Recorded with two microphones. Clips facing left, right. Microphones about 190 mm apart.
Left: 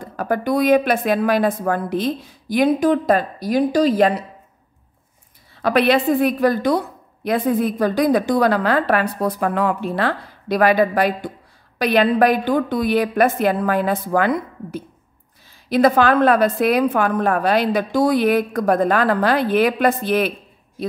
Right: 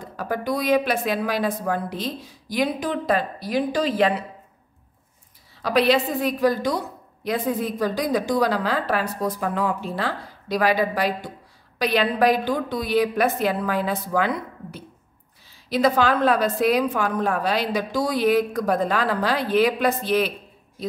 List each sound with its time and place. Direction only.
0.2 s speech: 55° left (ahead or behind)
5.6 s a woman's voice: 60° left (ahead or behind)